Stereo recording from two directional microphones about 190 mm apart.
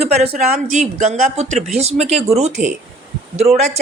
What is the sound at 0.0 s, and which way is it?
A woman's voice, 30° right (ahead or behind).